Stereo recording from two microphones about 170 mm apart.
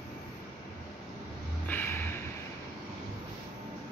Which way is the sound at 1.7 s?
10° left (ahead or behind).